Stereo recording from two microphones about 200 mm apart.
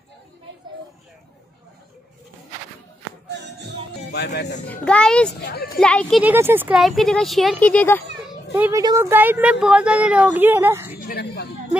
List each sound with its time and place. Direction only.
4.1 s speech: 55° left (ahead or behind)
4.6 s speech: 5° left (ahead or behind)
5.4 s speech: 50° left (ahead or behind)
5.8 s speech: 5° left (ahead or behind)
6.2 s speech: 10° right (ahead or behind); by 8.0 s 10° left (ahead or behind)
8.3 s a sound: 10° right (ahead or behind)
8.8 s speech: 15° right (ahead or behind)
11.0 s speech: 50° left (ahead or behind)